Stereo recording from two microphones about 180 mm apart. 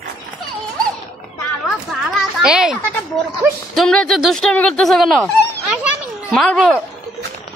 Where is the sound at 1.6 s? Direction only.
Centre (ahead or behind).